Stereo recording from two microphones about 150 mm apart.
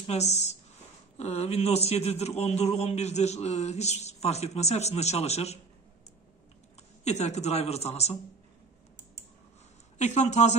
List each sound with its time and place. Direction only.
0.0 s a man's voice: 45° left (ahead or behind)
7.1 s a man's voice: 45° left (ahead or behind)
9.9 s a man's voice: 50° left (ahead or behind)